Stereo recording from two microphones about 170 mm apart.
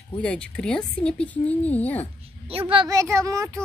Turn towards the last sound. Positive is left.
turn(degrees=-20)  # may be behind; listen again after turning